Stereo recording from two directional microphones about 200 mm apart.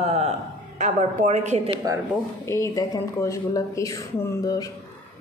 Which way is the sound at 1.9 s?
20° right (ahead or behind).